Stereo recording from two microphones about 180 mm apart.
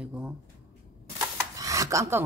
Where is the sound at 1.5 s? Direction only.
20° right (ahead or behind).